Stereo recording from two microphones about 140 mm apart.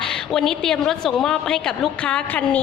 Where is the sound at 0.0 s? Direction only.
5° left (ahead or behind).